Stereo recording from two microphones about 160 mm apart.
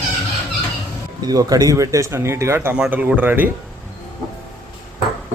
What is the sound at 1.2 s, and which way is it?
Speech, 25° right (ahead or behind).